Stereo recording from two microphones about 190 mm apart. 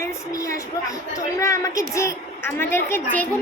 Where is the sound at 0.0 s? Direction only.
15° left (ahead or behind).